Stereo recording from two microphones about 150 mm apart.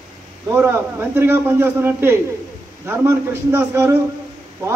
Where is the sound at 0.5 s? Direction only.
15° right (ahead or behind).